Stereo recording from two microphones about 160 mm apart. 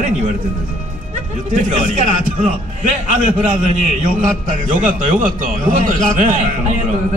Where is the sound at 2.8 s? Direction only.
50° right (ahead or behind).